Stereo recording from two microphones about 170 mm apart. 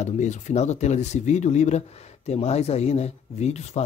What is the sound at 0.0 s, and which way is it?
Speech, 45° left (ahead or behind).